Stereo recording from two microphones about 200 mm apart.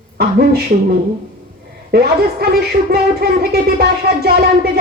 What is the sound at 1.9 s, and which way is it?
Music, 50° right (ahead or behind).